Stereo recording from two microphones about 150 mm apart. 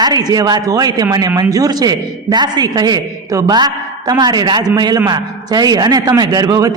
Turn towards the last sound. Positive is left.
turn(degrees=-25)  # may be behind; listen again after turning